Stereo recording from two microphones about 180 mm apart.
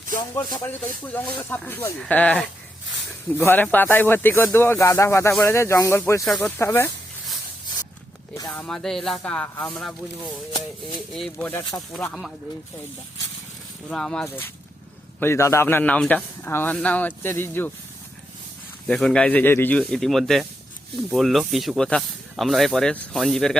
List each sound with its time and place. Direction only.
0.2 s speech: 20° left (ahead or behind)
1.0 s a man's voice: 10° left (ahead or behind)
6.2 s speech: centre (ahead or behind)
6.6 s a man's voice: 15° left (ahead or behind)
8.4 s a man's voice: 20° left (ahead or behind)
8.6 s speech: 5° left (ahead or behind)
11.1 s a man's voice: 5° left (ahead or behind)
13.9 s a man's voice: 5° left (ahead or behind)
18.9 s speech: 5° left (ahead or behind)